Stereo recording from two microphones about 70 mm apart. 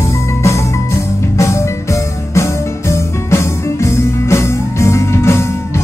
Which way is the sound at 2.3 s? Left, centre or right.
Left.